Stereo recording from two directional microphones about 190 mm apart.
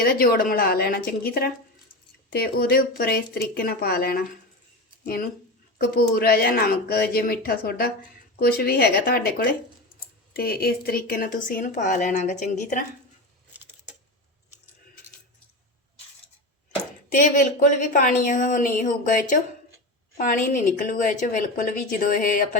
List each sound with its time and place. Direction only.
0.0 s speech: 50° left (ahead or behind)
17.2 s speech: 45° left (ahead or behind)